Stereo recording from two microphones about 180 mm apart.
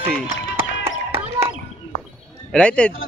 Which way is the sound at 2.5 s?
5° left (ahead or behind).